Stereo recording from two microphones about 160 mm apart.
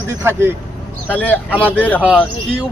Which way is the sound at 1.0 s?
10° left (ahead or behind).